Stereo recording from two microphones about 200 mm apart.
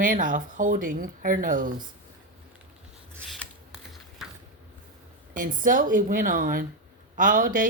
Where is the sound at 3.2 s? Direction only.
Centre (ahead or behind).